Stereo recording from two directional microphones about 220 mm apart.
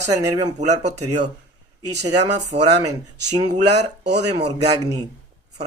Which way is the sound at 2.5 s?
45° right (ahead or behind).